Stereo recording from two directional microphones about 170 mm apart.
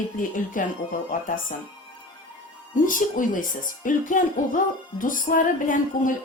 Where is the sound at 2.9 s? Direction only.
50° left (ahead or behind).